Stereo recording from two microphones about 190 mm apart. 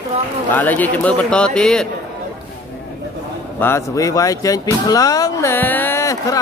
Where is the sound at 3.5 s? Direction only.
15° left (ahead or behind).